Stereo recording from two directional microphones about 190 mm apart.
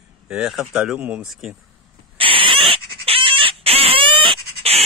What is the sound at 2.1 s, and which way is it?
Rodents, 30° right (ahead or behind).